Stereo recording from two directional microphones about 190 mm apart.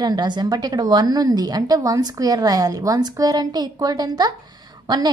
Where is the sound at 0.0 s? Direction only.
20° right (ahead or behind).